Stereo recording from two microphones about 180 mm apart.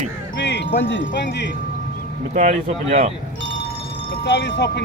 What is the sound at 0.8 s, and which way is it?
Speech, 90° left.